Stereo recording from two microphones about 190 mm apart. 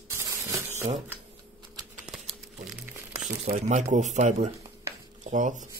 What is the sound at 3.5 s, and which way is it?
Speech, 40° right (ahead or behind).